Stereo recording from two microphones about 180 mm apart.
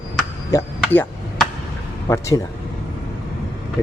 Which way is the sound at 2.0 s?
15° left (ahead or behind).